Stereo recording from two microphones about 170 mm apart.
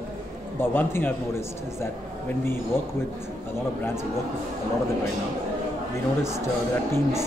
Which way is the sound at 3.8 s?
15° left (ahead or behind).